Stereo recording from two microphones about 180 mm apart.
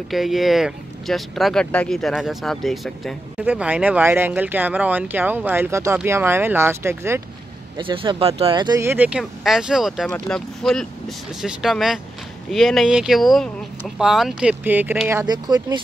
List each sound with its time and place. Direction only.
0.1 s speech: centre (ahead or behind)
7.7 s speech: 30° right (ahead or behind)